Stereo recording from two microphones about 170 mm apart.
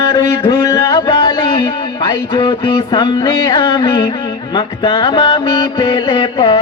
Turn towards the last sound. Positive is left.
turn(degrees=30)  # may be behind; listen again after turning